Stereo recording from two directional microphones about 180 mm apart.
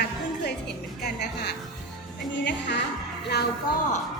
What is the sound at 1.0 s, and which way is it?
Speech, 65° left (ahead or behind).